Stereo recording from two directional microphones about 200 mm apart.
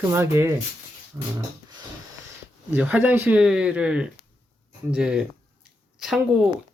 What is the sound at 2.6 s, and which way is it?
Speech, 10° right (ahead or behind).